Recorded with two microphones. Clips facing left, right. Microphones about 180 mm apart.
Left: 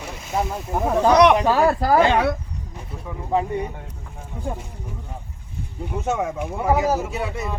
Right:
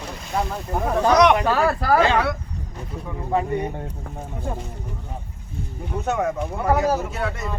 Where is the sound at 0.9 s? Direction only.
10° left (ahead or behind).